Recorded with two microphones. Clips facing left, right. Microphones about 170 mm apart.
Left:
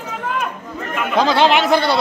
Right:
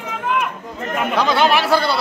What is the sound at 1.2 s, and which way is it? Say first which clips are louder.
Speech: left 3 dB; 25° left (ahead or behind).